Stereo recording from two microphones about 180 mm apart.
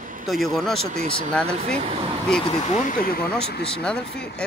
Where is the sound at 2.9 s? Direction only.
55° left (ahead or behind).